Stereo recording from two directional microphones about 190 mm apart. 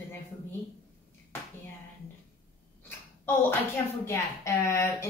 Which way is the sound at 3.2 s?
10° left (ahead or behind).